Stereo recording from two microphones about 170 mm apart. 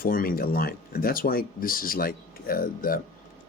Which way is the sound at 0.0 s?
55° left (ahead or behind).